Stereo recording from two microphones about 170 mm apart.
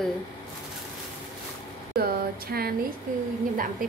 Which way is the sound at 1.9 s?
65° right (ahead or behind).